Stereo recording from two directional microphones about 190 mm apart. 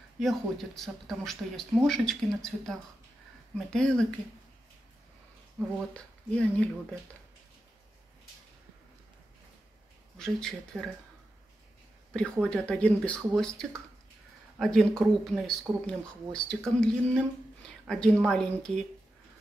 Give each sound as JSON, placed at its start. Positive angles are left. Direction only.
{"t": 0.2, "sound": "speech", "side_deg": 0}
{"t": 5.9, "sound": "speech", "side_deg": 5}
{"t": 10.1, "sound": "speech", "side_deg": 5}
{"t": 12.1, "sound": "speech", "side_deg": 5}